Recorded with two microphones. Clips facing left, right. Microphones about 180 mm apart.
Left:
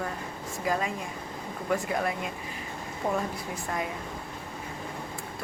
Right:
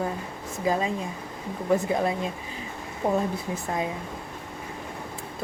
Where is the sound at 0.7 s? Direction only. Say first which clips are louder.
Right 4 dB; 25° right (ahead or behind).